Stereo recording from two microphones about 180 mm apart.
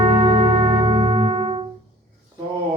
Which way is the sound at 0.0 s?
25° right (ahead or behind).